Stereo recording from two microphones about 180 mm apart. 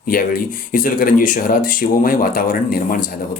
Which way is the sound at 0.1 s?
50° left (ahead or behind).